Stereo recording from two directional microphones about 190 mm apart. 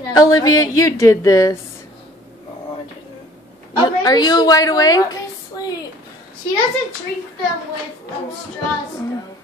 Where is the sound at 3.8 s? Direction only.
20° left (ahead or behind).